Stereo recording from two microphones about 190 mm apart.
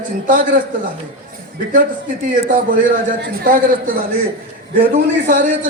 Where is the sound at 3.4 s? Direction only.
45° right (ahead or behind).